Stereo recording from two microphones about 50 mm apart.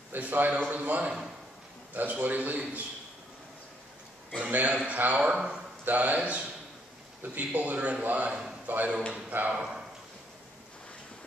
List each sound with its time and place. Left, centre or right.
0.1 s a man's voice: right
4.5 s a man's voice: right
5.3 s speech: centre
5.9 s a man's voice: right
8.3 s a man's voice: centre
8.6 s a man's voice: right